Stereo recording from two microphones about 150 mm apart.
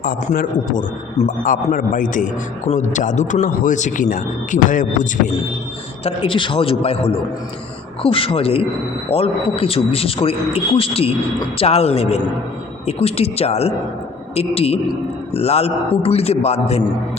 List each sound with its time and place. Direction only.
0.0 s a man's voice: 70° left (ahead or behind)
6.1 s a man's voice: 35° left (ahead or behind)